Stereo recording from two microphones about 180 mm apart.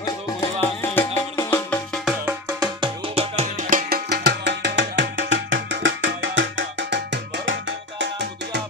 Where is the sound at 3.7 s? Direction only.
60° right (ahead or behind); by 7.0 s 90° right.